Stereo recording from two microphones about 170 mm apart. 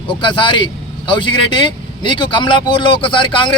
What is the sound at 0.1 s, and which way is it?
A man's voice, 30° left (ahead or behind).